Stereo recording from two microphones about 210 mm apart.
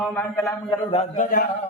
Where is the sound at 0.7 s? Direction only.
30° left (ahead or behind).